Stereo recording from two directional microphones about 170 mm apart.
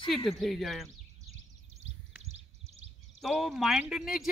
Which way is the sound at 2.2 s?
40° right (ahead or behind).